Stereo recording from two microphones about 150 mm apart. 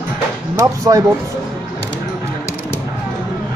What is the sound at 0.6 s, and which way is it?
Speech, 20° right (ahead or behind).